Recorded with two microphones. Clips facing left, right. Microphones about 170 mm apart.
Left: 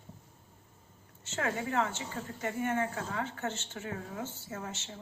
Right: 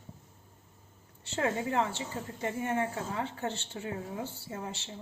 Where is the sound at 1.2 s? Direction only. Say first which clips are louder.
Right 3 dB; 30° right (ahead or behind).